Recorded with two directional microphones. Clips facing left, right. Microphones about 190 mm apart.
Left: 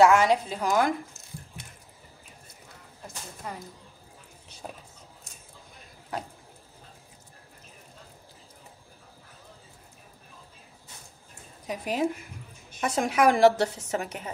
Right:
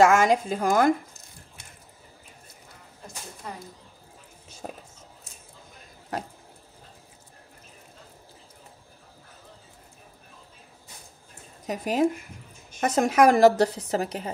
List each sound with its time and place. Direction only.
0.0 s a woman's voice: 45° right (ahead or behind)
11.6 s a woman's voice: 45° right (ahead or behind)